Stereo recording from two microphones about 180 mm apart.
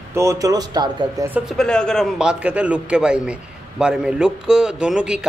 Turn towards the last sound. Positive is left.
turn(degrees=-5)  # may be behind; listen again after turning